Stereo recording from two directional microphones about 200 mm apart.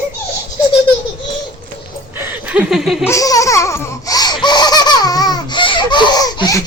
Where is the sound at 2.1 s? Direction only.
10° right (ahead or behind).